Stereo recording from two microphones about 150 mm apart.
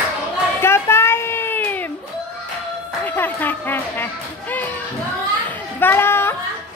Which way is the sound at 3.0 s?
10° left (ahead or behind).